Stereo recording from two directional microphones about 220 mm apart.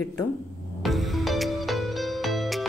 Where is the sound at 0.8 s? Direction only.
Centre (ahead or behind).